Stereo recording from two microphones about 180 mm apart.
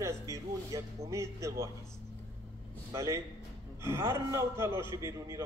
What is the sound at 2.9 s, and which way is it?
A man's voice, 15° right (ahead or behind).